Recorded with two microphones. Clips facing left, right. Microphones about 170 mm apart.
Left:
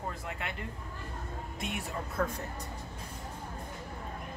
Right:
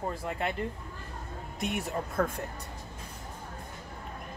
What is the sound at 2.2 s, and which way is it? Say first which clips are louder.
Speech: right 3 dB; 45° right (ahead or behind).